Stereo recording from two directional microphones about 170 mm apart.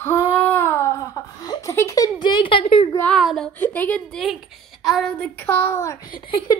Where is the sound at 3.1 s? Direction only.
Centre (ahead or behind).